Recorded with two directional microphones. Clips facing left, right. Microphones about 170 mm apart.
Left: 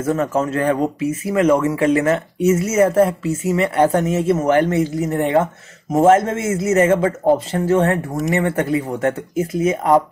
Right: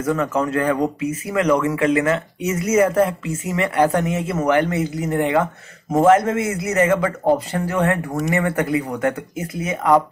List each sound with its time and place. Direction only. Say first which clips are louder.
0.0 s speech: left 1 dB; 25° left (ahead or behind)
5.1 s speech: left 1 dB; 40° left (ahead or behind)
5.9 s speech: left 1 dB; 25° left (ahead or behind)